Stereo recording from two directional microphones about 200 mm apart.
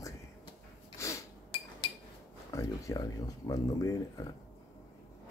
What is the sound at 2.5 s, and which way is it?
Speech, 15° left (ahead or behind).